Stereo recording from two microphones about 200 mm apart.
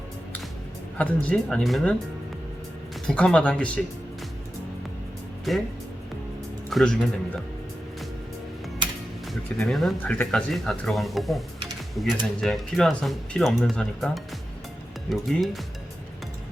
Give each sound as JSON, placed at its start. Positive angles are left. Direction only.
{"t": 0.9, "sound": "speech", "side_deg": 5}
{"t": 3.1, "sound": "speech", "side_deg": 5}
{"t": 5.5, "sound": "speech", "side_deg": 0}
{"t": 6.7, "sound": "speech", "side_deg": 0}
{"t": 9.2, "sound": "speech", "side_deg": 0}